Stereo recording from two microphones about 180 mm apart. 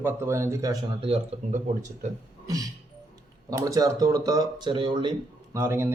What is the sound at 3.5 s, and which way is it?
Speech, 20° right (ahead or behind).